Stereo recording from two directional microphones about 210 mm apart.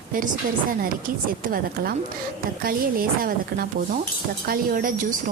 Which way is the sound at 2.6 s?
45° right (ahead or behind).